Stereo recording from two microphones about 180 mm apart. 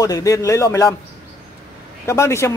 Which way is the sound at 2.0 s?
15° left (ahead or behind).